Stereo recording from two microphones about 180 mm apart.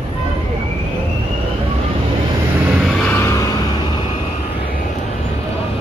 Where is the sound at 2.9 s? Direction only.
5° left (ahead or behind).